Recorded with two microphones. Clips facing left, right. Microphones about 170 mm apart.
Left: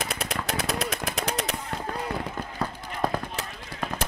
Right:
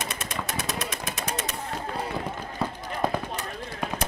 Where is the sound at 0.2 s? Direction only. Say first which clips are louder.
Left 3 dB; 65° left (ahead or behind).